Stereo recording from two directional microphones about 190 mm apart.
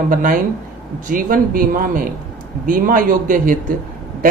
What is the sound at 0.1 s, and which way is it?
Speech, 45° right (ahead or behind).